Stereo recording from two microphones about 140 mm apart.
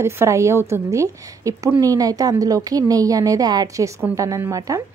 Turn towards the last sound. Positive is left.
turn(degrees=-25)  # may be behind; listen again after turning